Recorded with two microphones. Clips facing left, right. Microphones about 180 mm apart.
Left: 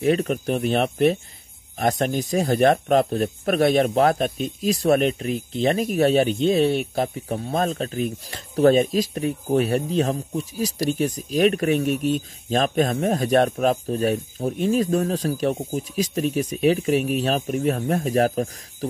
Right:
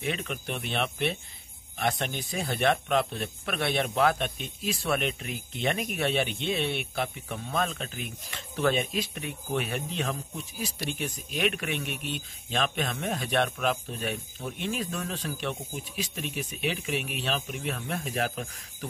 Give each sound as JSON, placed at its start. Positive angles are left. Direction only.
{"t": 0.0, "sound": "speech", "side_deg": 40}